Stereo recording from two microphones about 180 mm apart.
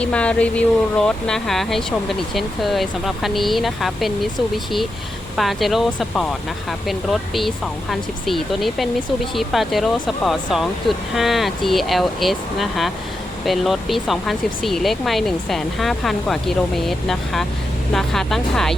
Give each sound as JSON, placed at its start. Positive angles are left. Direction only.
{"t": 0.0, "sound": "speech", "side_deg": 5}